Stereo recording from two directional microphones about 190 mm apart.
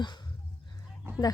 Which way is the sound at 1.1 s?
10° right (ahead or behind).